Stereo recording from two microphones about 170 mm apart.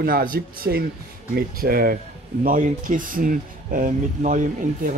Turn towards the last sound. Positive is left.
turn(degrees=-50)  # may be behind; listen again after turning